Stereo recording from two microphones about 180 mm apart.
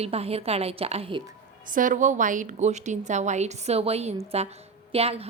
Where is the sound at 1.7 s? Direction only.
45° right (ahead or behind).